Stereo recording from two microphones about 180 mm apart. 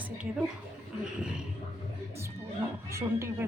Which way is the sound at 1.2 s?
5° right (ahead or behind).